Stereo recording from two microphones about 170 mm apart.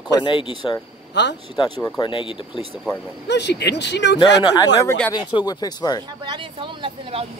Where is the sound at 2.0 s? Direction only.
30° left (ahead or behind).